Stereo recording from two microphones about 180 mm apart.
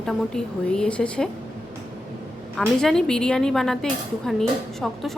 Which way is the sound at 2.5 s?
5° left (ahead or behind).